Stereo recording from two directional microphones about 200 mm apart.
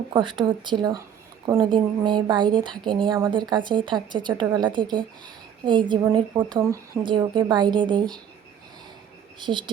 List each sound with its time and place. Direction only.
0.1 s a woman's voice: 25° right (ahead or behind)
9.4 s a woman's voice: 25° right (ahead or behind)